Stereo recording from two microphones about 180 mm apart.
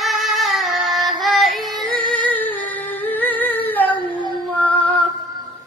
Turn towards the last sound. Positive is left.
turn(degrees=10)  # may be behind; listen again after turning